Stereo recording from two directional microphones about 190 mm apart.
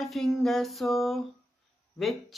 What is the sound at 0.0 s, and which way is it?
Speech, centre (ahead or behind).